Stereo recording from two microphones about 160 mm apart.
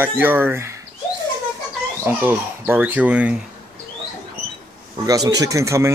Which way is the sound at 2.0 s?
15° right (ahead or behind).